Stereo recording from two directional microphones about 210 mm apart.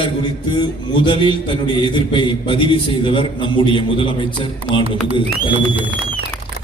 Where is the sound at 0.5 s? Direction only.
20° left (ahead or behind).